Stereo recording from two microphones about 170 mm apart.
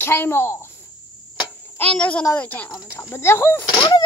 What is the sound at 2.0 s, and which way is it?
Speech, 5° left (ahead or behind).